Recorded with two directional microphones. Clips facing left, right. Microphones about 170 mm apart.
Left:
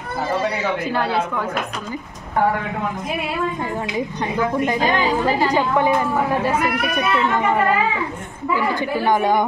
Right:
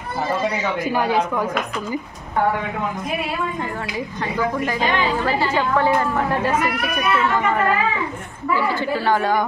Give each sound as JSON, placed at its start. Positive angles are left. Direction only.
{"t": 0.9, "sound": "a woman's voice", "side_deg": -15}
{"t": 5.2, "sound": "speech", "side_deg": 15}